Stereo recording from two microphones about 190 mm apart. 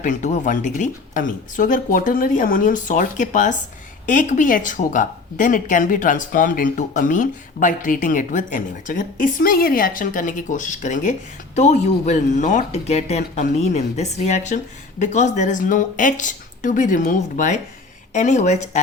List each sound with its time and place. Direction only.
0.0 s speech: 40° left (ahead or behind)